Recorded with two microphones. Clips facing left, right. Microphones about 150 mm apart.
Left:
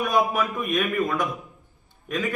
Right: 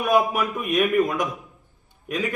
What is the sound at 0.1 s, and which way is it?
A man's voice, 10° right (ahead or behind).